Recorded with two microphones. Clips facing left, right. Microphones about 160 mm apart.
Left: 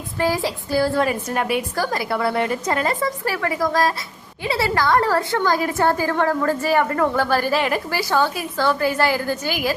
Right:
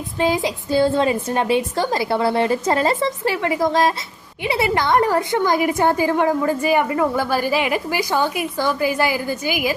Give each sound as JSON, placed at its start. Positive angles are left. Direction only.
{"t": 0.2, "sound": "a woman's voice", "side_deg": -20}